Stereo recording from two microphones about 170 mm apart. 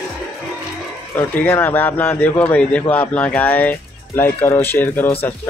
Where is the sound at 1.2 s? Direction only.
10° left (ahead or behind).